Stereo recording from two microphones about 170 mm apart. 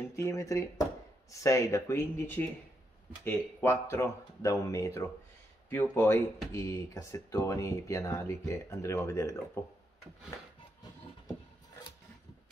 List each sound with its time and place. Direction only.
0.1 s speech: 15° left (ahead or behind)